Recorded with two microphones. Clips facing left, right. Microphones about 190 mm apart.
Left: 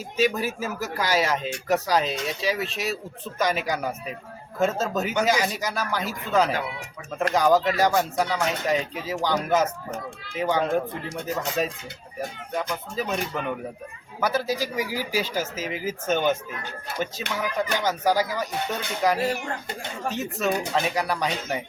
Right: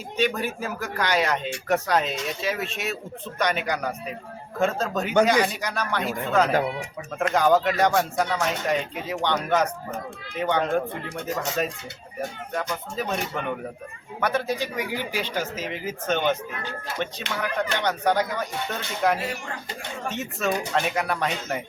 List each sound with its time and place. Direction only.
0.2 s speech: 5° left (ahead or behind)
6.5 s speech: 45° right (ahead or behind)
7.2 s speech: centre (ahead or behind)
14.5 s speech: 40° left (ahead or behind)
15.2 s speech: 5° left (ahead or behind)